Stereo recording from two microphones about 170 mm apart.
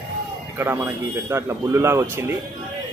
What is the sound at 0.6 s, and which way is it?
A man's voice, 15° right (ahead or behind).